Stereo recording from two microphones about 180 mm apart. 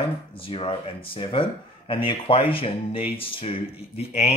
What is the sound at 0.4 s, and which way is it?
Speech, 30° left (ahead or behind).